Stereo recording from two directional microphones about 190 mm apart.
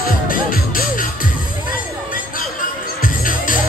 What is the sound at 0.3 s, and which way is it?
Music, 50° left (ahead or behind).